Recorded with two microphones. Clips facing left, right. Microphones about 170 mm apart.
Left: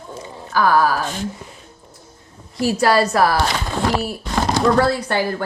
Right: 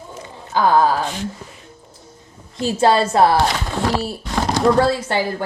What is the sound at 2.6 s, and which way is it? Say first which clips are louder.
Speech: even; 25° right (ahead or behind).